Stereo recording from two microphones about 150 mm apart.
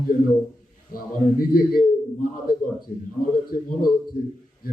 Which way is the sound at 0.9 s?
75° left (ahead or behind).